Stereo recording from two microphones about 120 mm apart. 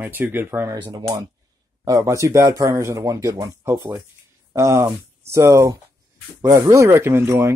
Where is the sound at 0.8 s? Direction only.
40° right (ahead or behind).